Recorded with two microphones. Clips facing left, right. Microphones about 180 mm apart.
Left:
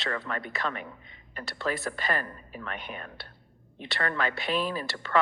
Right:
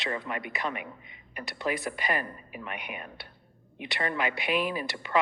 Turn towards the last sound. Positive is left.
turn(degrees=-15)  # may be behind; listen again after turning